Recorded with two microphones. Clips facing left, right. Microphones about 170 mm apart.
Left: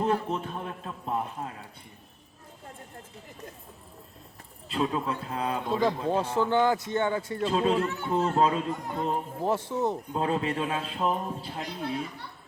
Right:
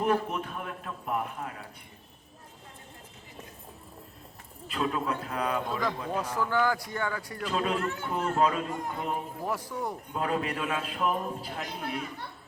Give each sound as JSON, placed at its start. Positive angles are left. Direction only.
{"t": 0.0, "sound": "a man's voice", "side_deg": 25}
{"t": 4.7, "sound": "a man's voice", "side_deg": 25}